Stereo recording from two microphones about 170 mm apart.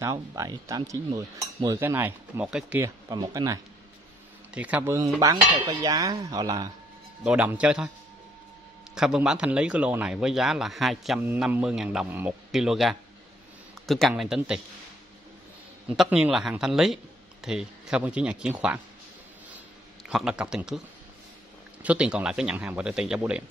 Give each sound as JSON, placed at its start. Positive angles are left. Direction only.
{"t": 0.0, "sound": "speech", "side_deg": -20}
{"t": 3.1, "sound": "a sound", "side_deg": -20}
{"t": 4.6, "sound": "speech", "side_deg": -10}
{"t": 5.2, "sound": "a sound", "side_deg": -20}
{"t": 7.2, "sound": "speech", "side_deg": -5}
{"t": 8.9, "sound": "speech", "side_deg": -5}
{"t": 16.0, "sound": "speech", "side_deg": -5}
{"t": 20.1, "sound": "speech", "side_deg": -5}
{"t": 21.8, "sound": "speech", "side_deg": -5}